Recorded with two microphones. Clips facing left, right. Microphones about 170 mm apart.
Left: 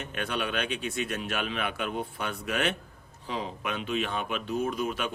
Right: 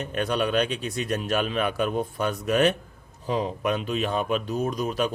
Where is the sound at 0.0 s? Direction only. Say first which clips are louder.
Right 7 dB; 40° right (ahead or behind).